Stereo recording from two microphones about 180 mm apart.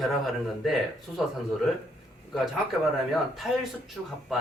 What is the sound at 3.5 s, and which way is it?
Speech, centre (ahead or behind).